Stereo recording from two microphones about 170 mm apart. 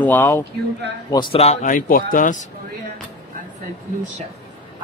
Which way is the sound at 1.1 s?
35° left (ahead or behind).